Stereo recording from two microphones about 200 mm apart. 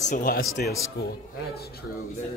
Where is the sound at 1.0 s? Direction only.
55° left (ahead or behind).